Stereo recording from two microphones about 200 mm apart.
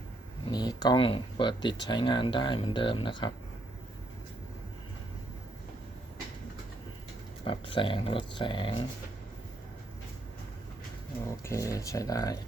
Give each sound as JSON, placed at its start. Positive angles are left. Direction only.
{"t": 0.5, "sound": "speech", "side_deg": 20}
{"t": 7.4, "sound": "speech", "side_deg": 25}
{"t": 11.3, "sound": "speech", "side_deg": 15}